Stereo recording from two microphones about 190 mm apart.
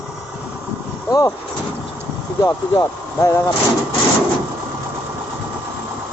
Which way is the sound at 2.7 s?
15° left (ahead or behind).